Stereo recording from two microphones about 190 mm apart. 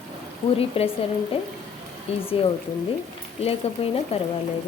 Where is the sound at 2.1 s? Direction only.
30° left (ahead or behind).